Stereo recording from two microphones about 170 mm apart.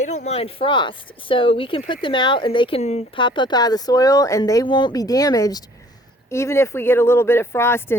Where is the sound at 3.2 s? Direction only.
30° left (ahead or behind).